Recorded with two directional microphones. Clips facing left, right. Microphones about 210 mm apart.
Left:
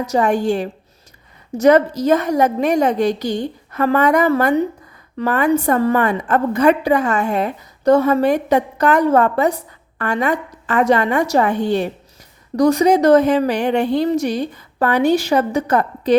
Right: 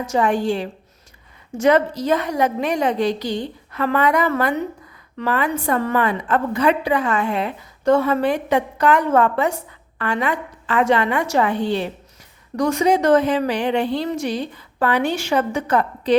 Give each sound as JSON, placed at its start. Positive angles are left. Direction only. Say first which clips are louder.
{"t": 0.0, "sound": "a woman's voice", "louder": "left 2 dB", "side_deg": 40}